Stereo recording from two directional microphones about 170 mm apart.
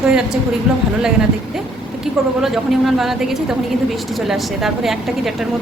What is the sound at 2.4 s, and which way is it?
Speech, centre (ahead or behind).